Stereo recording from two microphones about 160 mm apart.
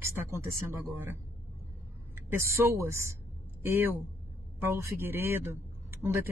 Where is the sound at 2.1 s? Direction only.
15° right (ahead or behind).